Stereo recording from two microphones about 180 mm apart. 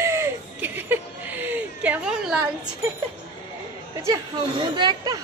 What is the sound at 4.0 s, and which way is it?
Speech, 20° right (ahead or behind).